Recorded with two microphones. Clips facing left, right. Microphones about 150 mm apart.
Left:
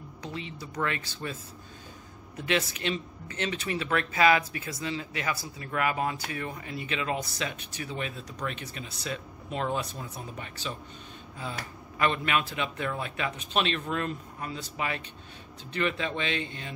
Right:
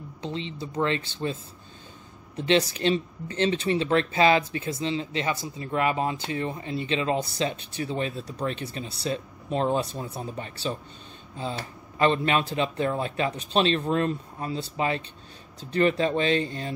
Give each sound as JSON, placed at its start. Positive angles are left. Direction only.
{"t": 0.2, "sound": "speech", "side_deg": -25}